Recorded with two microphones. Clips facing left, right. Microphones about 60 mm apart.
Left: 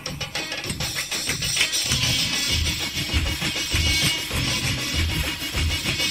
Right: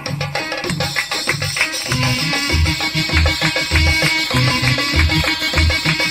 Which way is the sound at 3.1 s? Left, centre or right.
Right.